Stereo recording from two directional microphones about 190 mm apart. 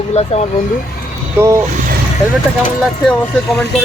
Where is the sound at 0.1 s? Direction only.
35° left (ahead or behind).